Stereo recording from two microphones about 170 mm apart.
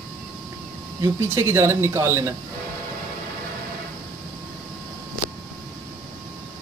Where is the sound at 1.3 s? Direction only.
15° right (ahead or behind).